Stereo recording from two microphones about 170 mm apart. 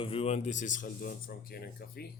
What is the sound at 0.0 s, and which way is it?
Speech, 35° left (ahead or behind).